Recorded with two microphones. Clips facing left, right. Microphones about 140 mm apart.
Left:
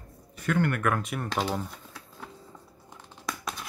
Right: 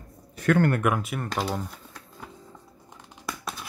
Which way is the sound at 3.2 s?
Centre (ahead or behind).